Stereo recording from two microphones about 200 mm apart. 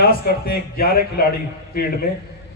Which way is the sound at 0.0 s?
50° left (ahead or behind).